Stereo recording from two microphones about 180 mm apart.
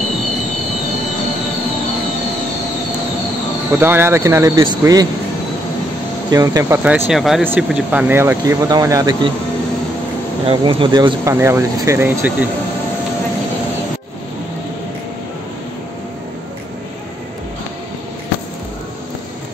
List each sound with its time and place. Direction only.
3.8 s speech: 15° right (ahead or behind)
6.3 s speech: 20° right (ahead or behind)
6.8 s speech: 5° right (ahead or behind)
10.4 s speech: 30° right (ahead or behind); by 12.4 s 15° right (ahead or behind)